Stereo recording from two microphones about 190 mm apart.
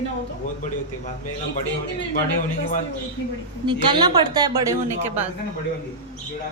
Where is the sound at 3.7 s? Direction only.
25° right (ahead or behind).